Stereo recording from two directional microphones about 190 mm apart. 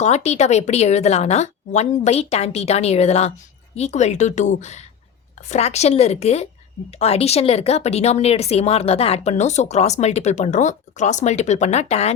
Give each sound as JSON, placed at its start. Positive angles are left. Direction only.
{"t": 0.0, "sound": "speech", "side_deg": 35}